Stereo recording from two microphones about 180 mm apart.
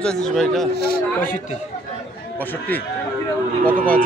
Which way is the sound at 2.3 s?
10° left (ahead or behind).